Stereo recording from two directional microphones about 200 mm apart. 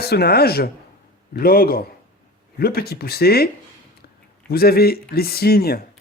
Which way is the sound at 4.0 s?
50° left (ahead or behind).